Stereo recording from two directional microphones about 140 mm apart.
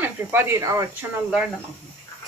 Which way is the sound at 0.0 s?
15° right (ahead or behind).